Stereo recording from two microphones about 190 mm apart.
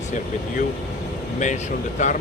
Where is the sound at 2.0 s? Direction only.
40° left (ahead or behind).